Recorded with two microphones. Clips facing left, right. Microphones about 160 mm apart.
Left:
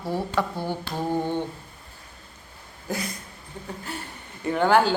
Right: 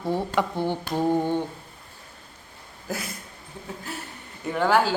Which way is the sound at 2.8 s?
5° right (ahead or behind).